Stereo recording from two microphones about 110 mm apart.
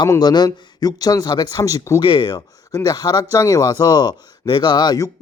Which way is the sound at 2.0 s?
45° left (ahead or behind).